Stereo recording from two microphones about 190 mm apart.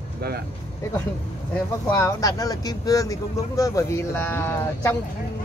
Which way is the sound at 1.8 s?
15° left (ahead or behind).